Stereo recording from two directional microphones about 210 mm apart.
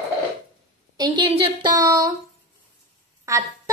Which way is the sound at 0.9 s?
20° right (ahead or behind).